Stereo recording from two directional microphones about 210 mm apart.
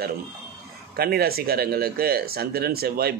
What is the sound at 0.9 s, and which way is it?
Speech, 45° right (ahead or behind).